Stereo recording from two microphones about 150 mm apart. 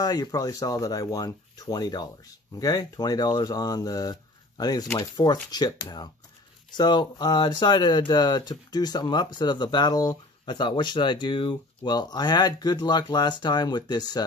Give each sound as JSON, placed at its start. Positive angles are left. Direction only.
{"t": 0.0, "sound": "speech", "side_deg": 25}